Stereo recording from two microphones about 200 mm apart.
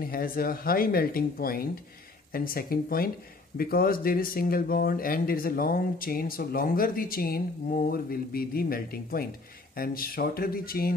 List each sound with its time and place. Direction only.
0.0 s speech: 45° left (ahead or behind)